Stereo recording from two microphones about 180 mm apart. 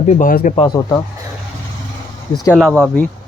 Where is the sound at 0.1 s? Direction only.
50° left (ahead or behind).